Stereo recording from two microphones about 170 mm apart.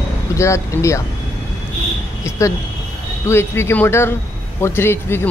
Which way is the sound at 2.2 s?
20° left (ahead or behind).